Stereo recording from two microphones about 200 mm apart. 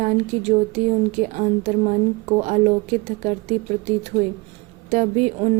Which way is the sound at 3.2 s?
35° right (ahead or behind).